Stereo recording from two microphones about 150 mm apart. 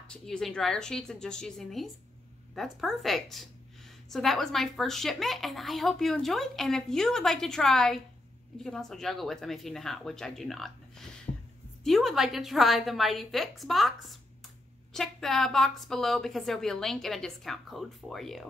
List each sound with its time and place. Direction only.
0.0 s speech: 5° left (ahead or behind)
11.3 s heart sounds: 15° left (ahead or behind)
11.8 s speech: centre (ahead or behind)